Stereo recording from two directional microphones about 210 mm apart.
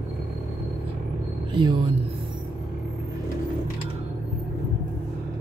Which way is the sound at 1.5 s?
20° right (ahead or behind).